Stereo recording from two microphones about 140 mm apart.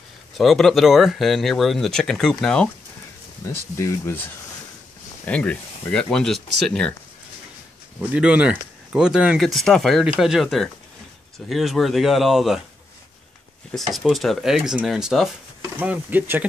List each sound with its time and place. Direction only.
0.4 s speech: centre (ahead or behind)
3.4 s speech: 20° left (ahead or behind)
5.2 s speech: 10° left (ahead or behind)
8.1 s speech: 10° right (ahead or behind)
13.9 s speech: centre (ahead or behind)